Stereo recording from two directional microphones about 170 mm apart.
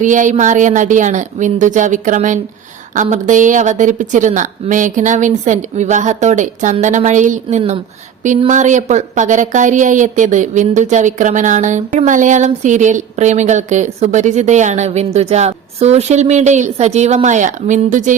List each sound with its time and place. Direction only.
0.0 s a woman's voice: 50° right (ahead or behind)